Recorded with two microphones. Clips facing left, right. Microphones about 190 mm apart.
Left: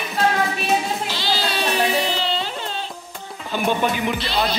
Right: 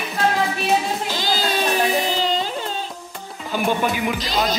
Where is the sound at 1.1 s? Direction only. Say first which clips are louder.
Right 2 dB; 45° right (ahead or behind).